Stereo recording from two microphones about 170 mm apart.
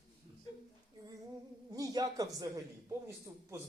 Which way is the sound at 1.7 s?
20° right (ahead or behind).